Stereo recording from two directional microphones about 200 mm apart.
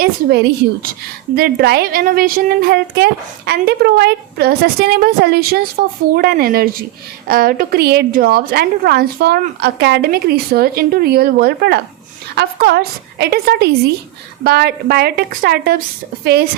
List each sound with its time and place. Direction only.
0.0 s a woman's voice: 55° right (ahead or behind)